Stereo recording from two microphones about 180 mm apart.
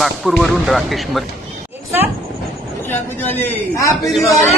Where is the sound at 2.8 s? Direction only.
10° left (ahead or behind).